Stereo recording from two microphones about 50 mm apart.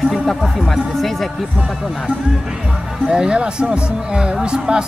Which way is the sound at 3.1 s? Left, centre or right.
Centre.